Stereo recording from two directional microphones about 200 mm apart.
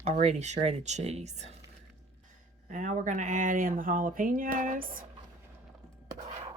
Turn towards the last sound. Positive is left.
turn(degrees=-45)  # may be behind; listen again after turning